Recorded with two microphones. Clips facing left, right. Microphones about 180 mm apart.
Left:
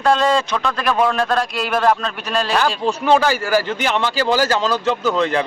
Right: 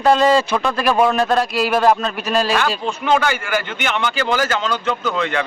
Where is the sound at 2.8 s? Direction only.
35° left (ahead or behind).